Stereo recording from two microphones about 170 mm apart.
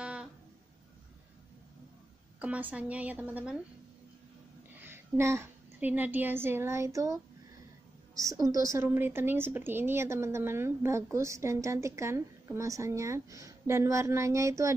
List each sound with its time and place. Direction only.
0.0 s a sound: 5° right (ahead or behind)
2.4 s a woman's voice: 10° right (ahead or behind)
4.7 s a woman's voice: 15° right (ahead or behind)